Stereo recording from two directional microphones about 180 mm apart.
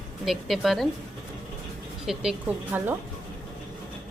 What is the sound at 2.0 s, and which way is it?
Speech, 5° right (ahead or behind).